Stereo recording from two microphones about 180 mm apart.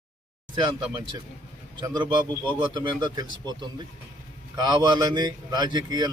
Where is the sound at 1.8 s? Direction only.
25° right (ahead or behind).